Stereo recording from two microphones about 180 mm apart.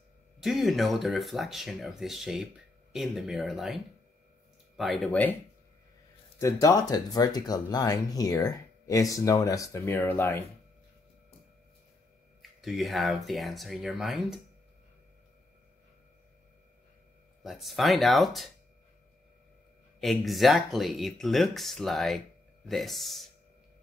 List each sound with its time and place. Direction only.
0.4 s speech: centre (ahead or behind)
6.4 s speech: 20° left (ahead or behind)
12.4 s speech: centre (ahead or behind)
17.4 s speech: centre (ahead or behind)
20.0 s speech: centre (ahead or behind)